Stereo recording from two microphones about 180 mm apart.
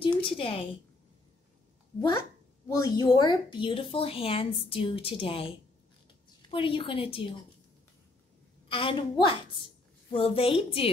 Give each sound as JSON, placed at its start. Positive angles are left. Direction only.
{"t": 0.2, "sound": "a sound", "side_deg": 30}
{"t": 2.0, "sound": "speech", "side_deg": 20}
{"t": 6.5, "sound": "speech", "side_deg": 30}
{"t": 8.6, "sound": "a woman's voice", "side_deg": 30}